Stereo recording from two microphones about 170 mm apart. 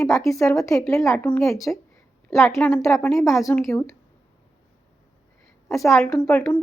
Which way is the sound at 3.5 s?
15° left (ahead or behind).